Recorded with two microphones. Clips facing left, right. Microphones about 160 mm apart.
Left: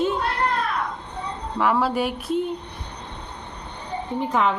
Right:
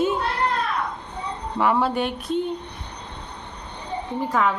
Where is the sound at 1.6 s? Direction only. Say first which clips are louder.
Even; centre (ahead or behind).